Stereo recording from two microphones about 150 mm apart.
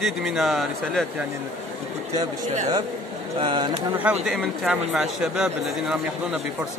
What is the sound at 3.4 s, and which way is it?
Speech, 30° right (ahead or behind).